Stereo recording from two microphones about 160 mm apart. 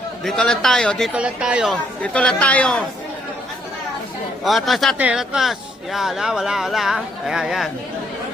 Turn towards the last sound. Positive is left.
turn(degrees=-5)  # may be behind; listen again after turning